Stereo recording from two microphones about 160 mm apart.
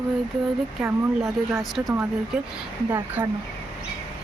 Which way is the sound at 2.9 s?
20° right (ahead or behind).